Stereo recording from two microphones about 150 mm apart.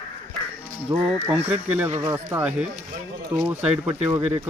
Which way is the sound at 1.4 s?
10° right (ahead or behind).